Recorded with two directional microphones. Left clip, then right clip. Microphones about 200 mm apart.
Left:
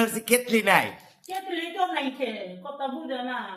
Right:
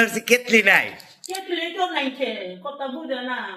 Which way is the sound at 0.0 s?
10° left (ahead or behind).